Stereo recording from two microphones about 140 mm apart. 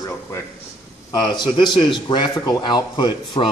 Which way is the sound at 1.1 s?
30° left (ahead or behind).